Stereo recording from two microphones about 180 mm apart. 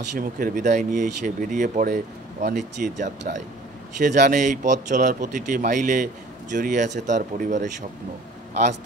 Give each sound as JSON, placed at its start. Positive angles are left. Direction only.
{"t": 0.1, "sound": "speech", "side_deg": -50}